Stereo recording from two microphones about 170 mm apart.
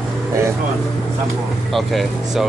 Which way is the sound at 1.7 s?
Centre (ahead or behind).